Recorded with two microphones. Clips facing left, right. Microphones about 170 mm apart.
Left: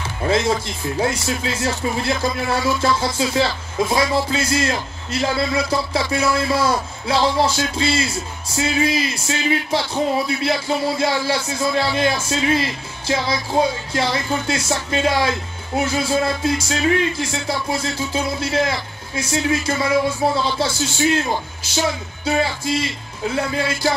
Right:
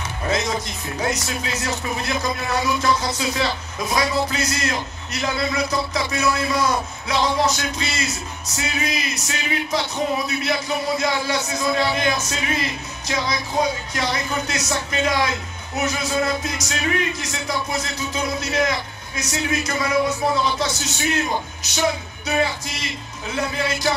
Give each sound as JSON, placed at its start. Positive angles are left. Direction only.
{"t": 0.2, "sound": "music", "side_deg": 30}
{"t": 0.9, "sound": "speech", "side_deg": 30}